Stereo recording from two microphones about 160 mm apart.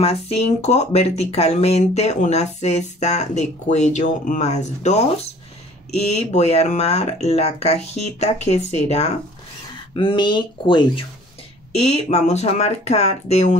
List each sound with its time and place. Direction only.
0.0 s speech: 40° left (ahead or behind)
9.9 s speech: 30° left (ahead or behind)
11.7 s speech: 40° left (ahead or behind)